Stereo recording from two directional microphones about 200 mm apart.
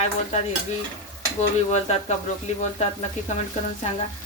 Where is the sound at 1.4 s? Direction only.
35° left (ahead or behind).